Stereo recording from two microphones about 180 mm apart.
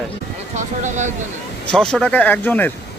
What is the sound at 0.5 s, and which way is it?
Speech, 40° right (ahead or behind).